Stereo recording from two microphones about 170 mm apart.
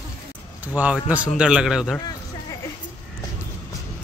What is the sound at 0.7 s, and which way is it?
A man's voice, 5° right (ahead or behind).